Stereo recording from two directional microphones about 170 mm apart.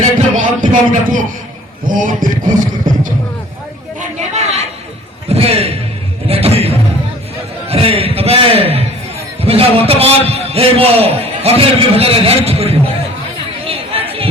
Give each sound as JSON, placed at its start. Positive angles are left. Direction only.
{"t": 0.3, "sound": "music", "side_deg": -50}
{"t": 1.9, "sound": "speech", "side_deg": -50}
{"t": 4.2, "sound": "chatter", "side_deg": -40}
{"t": 5.3, "sound": "a sound", "side_deg": -35}
{"t": 7.7, "sound": "a man's voice", "side_deg": -35}
{"t": 13.7, "sound": "chatter", "side_deg": -35}